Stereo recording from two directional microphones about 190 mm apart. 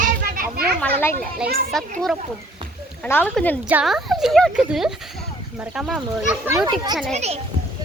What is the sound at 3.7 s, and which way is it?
Speech, 5° right (ahead or behind).